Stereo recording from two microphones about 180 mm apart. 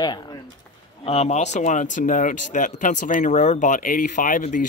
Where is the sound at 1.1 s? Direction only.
35° left (ahead or behind).